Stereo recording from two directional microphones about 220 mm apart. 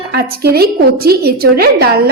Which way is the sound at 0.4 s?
45° right (ahead or behind).